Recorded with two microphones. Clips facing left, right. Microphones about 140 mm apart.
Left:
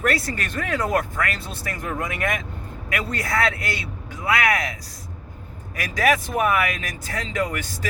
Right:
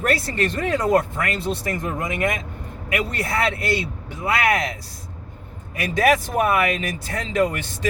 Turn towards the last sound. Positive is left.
turn(degrees=-25)  # may be behind; listen again after turning